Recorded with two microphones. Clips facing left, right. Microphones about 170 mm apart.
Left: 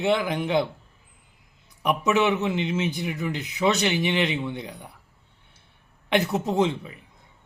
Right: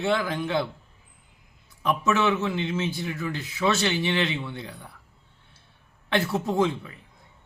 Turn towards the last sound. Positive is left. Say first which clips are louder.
# left 1 dB
turn(degrees=20)  # may be behind; listen again after turning